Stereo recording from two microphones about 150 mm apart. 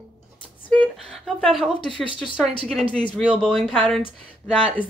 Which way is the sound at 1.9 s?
35° left (ahead or behind).